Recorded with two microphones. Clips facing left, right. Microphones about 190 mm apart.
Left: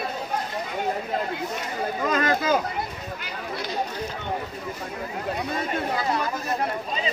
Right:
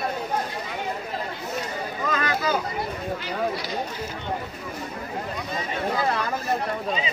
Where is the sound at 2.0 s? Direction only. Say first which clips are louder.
Left 3 dB; 40° left (ahead or behind).